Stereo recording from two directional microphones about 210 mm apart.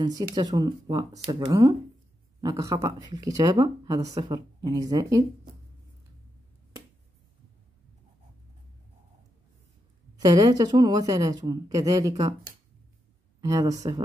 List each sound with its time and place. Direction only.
0.0 s a woman's voice: 20° right (ahead or behind)
10.1 s a woman's voice: 20° right (ahead or behind)